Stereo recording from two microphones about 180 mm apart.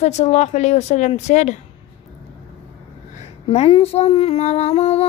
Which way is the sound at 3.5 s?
35° left (ahead or behind).